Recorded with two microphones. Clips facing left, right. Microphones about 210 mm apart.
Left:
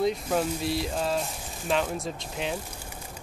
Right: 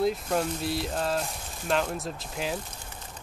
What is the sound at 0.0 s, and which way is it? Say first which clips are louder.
Speech: left 1 dB; centre (ahead or behind).